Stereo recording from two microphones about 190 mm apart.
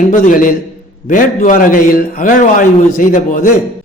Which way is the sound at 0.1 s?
45° left (ahead or behind).